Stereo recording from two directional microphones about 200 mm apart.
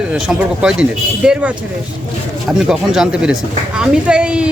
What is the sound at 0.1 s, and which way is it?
Speech, 5° right (ahead or behind).